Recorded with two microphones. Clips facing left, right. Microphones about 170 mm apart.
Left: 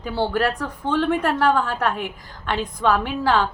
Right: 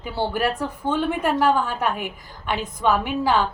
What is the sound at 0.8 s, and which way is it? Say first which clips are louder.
Speech: left 2 dB; 5° right (ahead or behind).